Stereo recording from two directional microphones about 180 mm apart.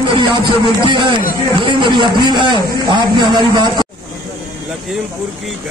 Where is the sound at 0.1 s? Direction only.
25° right (ahead or behind).